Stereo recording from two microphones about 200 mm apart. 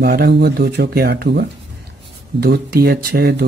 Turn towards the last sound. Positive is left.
turn(degrees=-50)  # may be behind; listen again after turning